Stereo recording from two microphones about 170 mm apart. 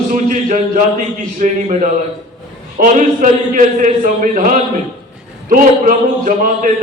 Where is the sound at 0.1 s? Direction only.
50° right (ahead or behind).